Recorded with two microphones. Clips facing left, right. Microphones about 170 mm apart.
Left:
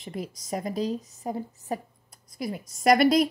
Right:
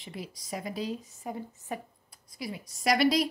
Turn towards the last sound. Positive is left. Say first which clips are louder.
# left 5 dB
turn(degrees=50)  # may be behind; listen again after turning